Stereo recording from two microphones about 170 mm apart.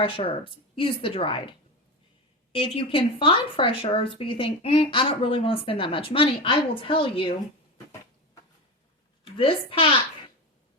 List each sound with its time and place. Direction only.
0.2 s a woman's voice: 30° left (ahead or behind)
2.7 s a woman's voice: 35° left (ahead or behind)
9.4 s a woman's voice: 30° left (ahead or behind)